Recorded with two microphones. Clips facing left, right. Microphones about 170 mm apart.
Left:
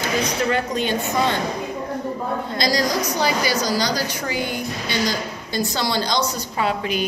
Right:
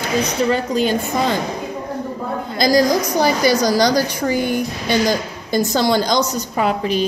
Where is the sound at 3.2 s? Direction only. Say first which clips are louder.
Right 7 dB; 45° right (ahead or behind).